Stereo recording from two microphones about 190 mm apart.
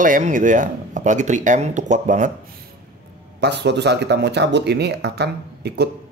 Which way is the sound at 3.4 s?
60° right (ahead or behind).